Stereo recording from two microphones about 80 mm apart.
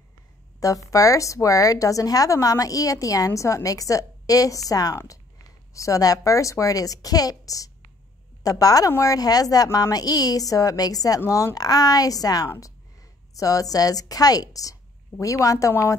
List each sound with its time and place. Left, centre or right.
0.6 s a woman's voice: left
15.7 s a woman's voice: left